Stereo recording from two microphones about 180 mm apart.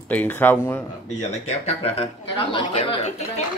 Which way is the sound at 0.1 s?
10° left (ahead or behind).